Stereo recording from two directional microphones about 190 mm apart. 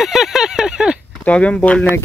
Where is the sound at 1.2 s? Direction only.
5° left (ahead or behind).